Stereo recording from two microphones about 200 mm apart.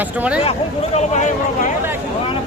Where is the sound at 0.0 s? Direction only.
10° right (ahead or behind).